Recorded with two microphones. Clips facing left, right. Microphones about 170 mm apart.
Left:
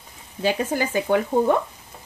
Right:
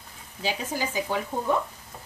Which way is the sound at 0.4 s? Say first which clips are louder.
Left 7 dB; 60° left (ahead or behind).